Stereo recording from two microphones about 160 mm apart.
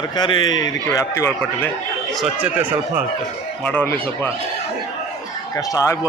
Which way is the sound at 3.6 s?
10° left (ahead or behind).